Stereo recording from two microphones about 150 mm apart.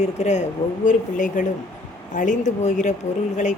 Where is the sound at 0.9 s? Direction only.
60° left (ahead or behind).